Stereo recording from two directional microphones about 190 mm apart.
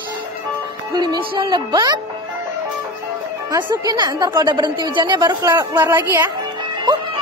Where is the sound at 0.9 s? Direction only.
20° right (ahead or behind).